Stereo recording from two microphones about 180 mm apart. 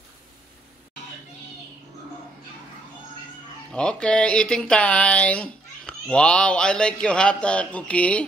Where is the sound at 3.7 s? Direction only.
5° left (ahead or behind).